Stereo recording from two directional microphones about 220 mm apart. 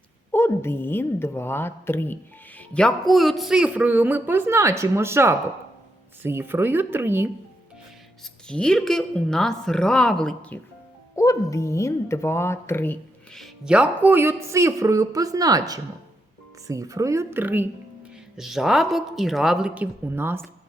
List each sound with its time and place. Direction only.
0.3 s a woman's voice: 10° left (ahead or behind); by 7.3 s 10° right (ahead or behind)
8.2 s speech: 5° left (ahead or behind)